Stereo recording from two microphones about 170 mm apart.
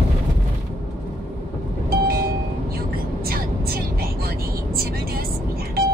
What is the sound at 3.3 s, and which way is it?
Vehicle, 60° right (ahead or behind).